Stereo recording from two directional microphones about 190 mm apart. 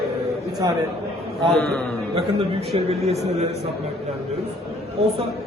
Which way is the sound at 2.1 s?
30° right (ahead or behind).